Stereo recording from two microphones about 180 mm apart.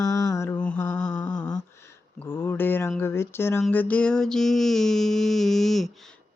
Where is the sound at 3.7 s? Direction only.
10° left (ahead or behind).